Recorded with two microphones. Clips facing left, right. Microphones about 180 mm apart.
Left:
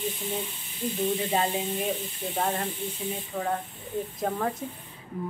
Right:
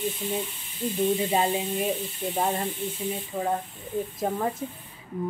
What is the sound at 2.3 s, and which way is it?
Speech, 10° right (ahead or behind).